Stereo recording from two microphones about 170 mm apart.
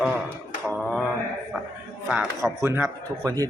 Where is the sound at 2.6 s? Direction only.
15° right (ahead or behind).